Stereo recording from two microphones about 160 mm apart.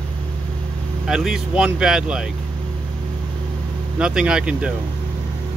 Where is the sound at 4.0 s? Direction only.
5° right (ahead or behind).